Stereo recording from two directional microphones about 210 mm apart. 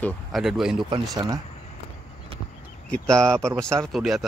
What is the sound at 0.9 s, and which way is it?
Speech, 20° right (ahead or behind).